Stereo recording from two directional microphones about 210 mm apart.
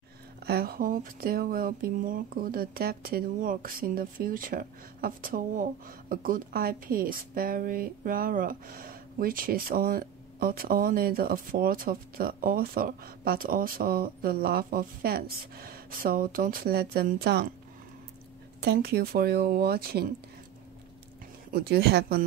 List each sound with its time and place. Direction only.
0.5 s speech: 45° right (ahead or behind)
18.6 s speech: 50° right (ahead or behind)
21.5 s speech: 50° right (ahead or behind)